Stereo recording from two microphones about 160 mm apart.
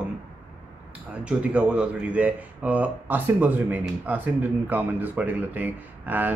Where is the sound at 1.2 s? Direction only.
5° right (ahead or behind).